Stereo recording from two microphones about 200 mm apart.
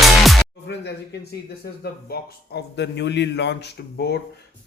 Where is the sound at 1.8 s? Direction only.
50° left (ahead or behind).